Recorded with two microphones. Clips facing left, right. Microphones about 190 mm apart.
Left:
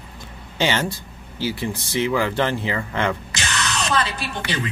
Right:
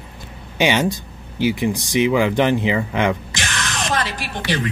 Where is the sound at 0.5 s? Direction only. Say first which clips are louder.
Right 4 dB; 15° right (ahead or behind).